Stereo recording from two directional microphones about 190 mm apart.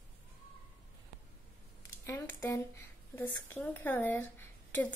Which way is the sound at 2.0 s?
15° left (ahead or behind).